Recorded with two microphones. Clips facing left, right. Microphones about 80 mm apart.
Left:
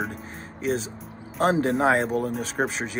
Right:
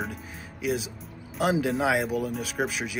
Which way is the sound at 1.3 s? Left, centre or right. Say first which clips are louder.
Left 3 dB; left.